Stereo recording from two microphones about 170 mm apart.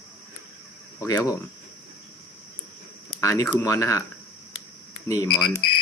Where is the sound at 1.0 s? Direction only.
20° left (ahead or behind).